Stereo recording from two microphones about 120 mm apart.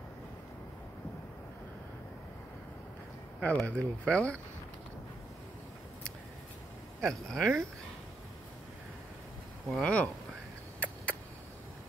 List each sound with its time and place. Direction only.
3.3 s speech: 10° left (ahead or behind)
7.0 s speech: 5° left (ahead or behind)
9.7 s speech: 5° left (ahead or behind)